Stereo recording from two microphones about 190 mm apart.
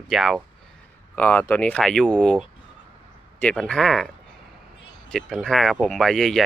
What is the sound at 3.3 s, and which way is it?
Speech, 5° left (ahead or behind).